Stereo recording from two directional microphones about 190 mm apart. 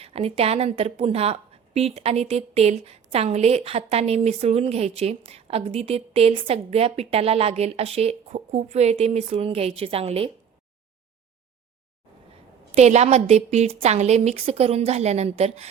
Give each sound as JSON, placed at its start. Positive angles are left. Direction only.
{"t": 0.0, "sound": "a woman's voice", "side_deg": -30}
{"t": 12.7, "sound": "a woman's voice", "side_deg": -35}